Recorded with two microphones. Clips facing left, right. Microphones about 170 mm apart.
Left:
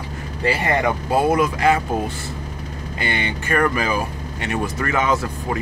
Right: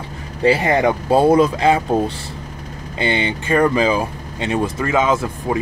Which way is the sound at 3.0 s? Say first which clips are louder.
Right 5 dB; 20° right (ahead or behind).